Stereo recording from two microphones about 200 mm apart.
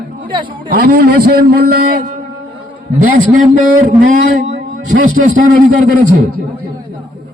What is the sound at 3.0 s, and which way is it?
A man's voice, 40° right (ahead or behind).